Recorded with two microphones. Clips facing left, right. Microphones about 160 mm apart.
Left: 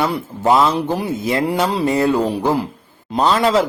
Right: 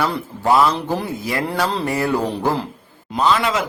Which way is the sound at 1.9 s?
20° left (ahead or behind).